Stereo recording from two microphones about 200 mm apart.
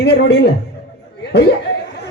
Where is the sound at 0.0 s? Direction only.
55° left (ahead or behind).